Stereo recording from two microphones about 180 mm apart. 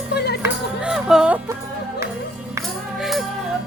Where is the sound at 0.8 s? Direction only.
5° right (ahead or behind).